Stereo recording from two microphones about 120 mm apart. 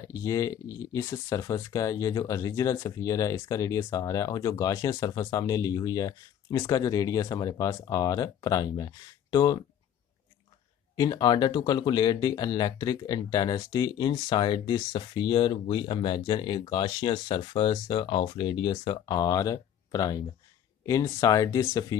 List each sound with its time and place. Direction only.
0.1 s speech: 30° left (ahead or behind)
11.0 s speech: 35° left (ahead or behind)